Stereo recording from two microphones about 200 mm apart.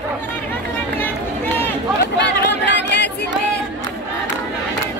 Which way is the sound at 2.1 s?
60° left (ahead or behind).